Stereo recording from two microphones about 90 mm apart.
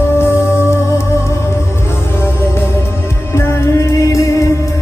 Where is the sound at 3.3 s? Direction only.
30° left (ahead or behind).